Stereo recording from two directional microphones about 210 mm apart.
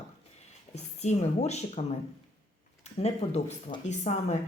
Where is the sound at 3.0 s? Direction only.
30° left (ahead or behind).